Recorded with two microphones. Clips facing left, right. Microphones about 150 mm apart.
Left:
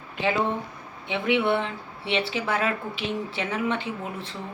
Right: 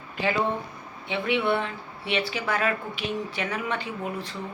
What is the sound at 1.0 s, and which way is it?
Speech, 20° left (ahead or behind).